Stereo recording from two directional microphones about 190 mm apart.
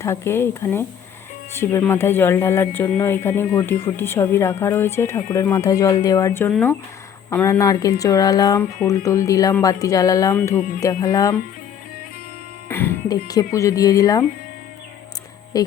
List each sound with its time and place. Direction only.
0.0 s speech: 15° left (ahead or behind)
12.6 s speech: 10° left (ahead or behind)
15.5 s speech: 20° left (ahead or behind)